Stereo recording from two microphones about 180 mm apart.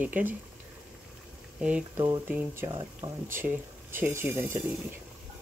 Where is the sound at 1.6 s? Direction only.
5° right (ahead or behind).